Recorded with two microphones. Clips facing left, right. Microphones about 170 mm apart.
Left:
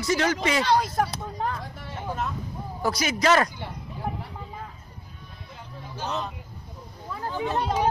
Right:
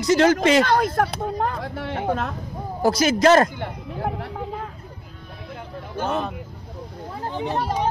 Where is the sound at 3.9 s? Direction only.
70° right (ahead or behind).